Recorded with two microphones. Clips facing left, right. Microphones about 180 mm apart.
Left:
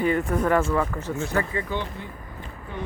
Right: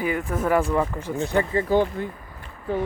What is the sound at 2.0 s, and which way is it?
Speech, 50° right (ahead or behind).